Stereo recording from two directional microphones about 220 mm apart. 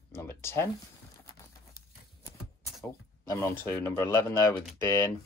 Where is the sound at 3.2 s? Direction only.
15° left (ahead or behind).